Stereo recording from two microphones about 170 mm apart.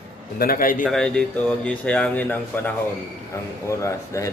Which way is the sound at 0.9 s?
5° left (ahead or behind).